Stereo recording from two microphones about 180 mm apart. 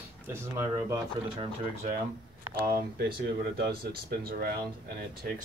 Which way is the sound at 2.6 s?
55° right (ahead or behind).